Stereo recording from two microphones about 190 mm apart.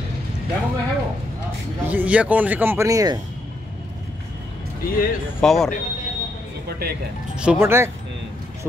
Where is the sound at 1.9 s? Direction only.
5° right (ahead or behind).